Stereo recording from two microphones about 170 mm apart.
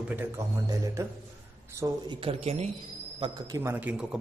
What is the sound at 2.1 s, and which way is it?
Speech, 30° right (ahead or behind).